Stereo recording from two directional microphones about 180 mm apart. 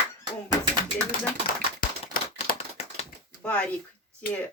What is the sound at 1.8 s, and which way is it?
Typewriter, 50° left (ahead or behind).